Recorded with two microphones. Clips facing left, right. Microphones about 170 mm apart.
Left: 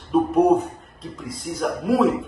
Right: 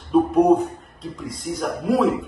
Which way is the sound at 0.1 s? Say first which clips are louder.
Right 1 dB; centre (ahead or behind).